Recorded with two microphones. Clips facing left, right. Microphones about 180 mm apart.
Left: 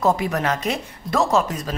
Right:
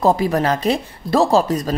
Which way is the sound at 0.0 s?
35° right (ahead or behind).